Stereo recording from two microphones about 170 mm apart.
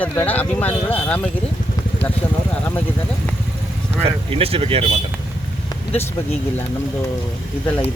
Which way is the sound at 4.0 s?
35° right (ahead or behind).